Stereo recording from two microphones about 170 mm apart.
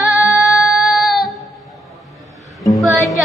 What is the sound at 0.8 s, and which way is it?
Child singing, centre (ahead or behind).